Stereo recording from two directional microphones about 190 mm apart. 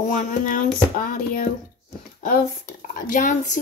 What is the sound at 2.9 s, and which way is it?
Speech, 45° left (ahead or behind).